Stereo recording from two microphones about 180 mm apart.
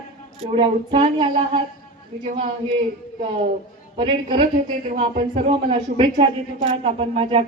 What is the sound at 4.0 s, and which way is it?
A woman's voice, 30° right (ahead or behind).